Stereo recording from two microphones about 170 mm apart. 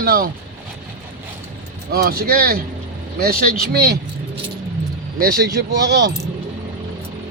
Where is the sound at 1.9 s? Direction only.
65° right (ahead or behind).